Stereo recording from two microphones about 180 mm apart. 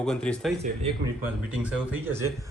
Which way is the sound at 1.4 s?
10° right (ahead or behind).